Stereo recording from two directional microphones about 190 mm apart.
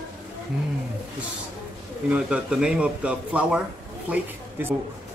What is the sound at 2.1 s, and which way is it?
A man's voice, 5° right (ahead or behind).